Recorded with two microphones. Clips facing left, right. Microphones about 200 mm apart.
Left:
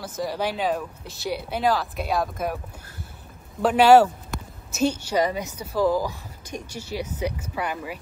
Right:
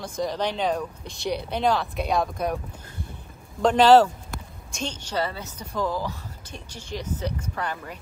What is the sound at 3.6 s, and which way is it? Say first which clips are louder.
A woman's voice: left 1 dB; 10° left (ahead or behind).